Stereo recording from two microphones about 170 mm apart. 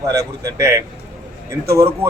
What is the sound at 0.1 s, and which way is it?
Speech, 20° right (ahead or behind).